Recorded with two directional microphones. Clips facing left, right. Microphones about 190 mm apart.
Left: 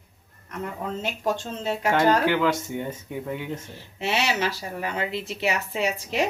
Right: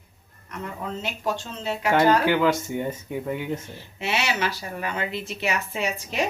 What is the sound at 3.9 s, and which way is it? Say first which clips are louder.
Speech: left 1 dB; 35° left (ahead or behind).